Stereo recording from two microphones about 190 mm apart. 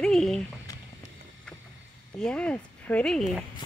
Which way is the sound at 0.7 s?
20° left (ahead or behind).